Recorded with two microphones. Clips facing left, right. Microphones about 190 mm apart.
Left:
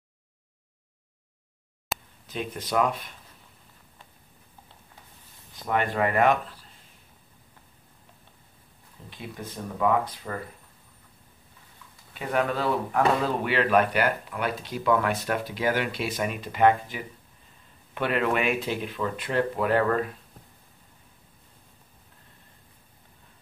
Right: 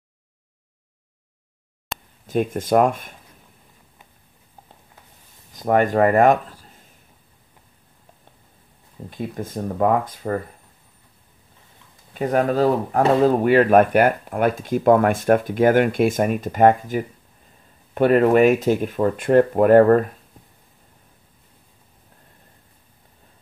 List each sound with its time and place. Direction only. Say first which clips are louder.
1.9 s a sound: even; centre (ahead or behind)
2.2 s speech: right 11 dB; 50° right (ahead or behind)
5.5 s speech: right 9 dB; 45° right (ahead or behind)
9.1 s speech: right 10 dB; 45° right (ahead or behind)
12.1 s speech: right 7 dB; 40° right (ahead or behind)